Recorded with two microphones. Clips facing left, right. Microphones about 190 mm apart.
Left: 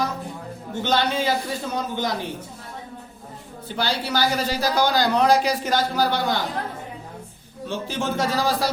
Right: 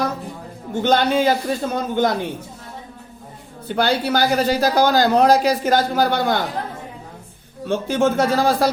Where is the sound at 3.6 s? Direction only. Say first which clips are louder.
Right 7 dB; 55° right (ahead or behind).